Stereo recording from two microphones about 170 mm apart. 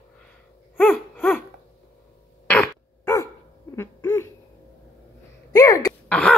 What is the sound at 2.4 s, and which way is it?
Throat clearing, 10° left (ahead or behind).